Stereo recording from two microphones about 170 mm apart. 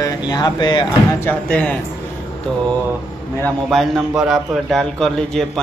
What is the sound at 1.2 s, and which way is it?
Speech, 10° left (ahead or behind).